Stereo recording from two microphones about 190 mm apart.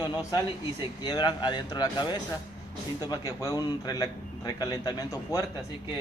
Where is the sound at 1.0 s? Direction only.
20° left (ahead or behind).